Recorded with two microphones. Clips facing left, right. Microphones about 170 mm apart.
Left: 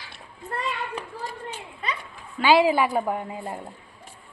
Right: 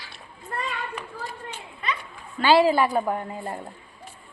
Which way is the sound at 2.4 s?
10° left (ahead or behind).